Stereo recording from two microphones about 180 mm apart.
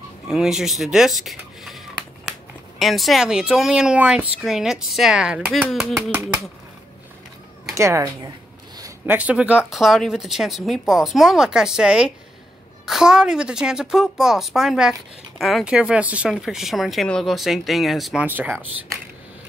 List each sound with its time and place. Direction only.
0.3 s a woman's voice: centre (ahead or behind)
2.8 s a woman's voice: centre (ahead or behind)
7.7 s a woman's voice: 15° right (ahead or behind)